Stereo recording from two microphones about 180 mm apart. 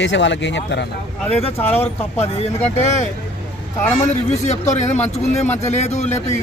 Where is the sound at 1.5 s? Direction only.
15° left (ahead or behind).